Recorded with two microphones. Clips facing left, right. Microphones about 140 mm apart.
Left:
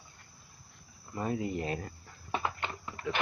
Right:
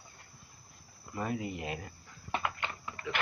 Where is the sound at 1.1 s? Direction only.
30° left (ahead or behind).